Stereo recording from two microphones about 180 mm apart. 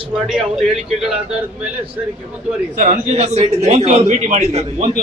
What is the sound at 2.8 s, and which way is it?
A man's voice, 40° right (ahead or behind).